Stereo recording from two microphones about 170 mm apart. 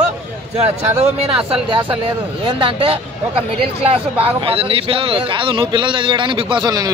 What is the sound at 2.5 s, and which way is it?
Speech, 30° right (ahead or behind).